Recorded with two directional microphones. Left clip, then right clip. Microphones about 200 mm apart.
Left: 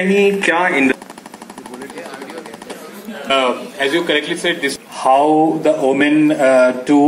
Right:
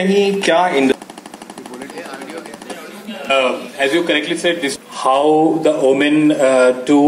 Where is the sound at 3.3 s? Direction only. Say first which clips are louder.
Even; 35° right (ahead or behind).